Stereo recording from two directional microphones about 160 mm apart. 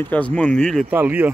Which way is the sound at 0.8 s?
10° right (ahead or behind).